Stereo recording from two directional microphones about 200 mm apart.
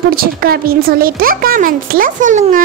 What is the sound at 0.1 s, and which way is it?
A child's voice, 50° right (ahead or behind).